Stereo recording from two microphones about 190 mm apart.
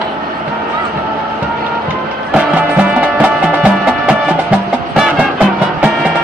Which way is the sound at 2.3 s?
5° right (ahead or behind).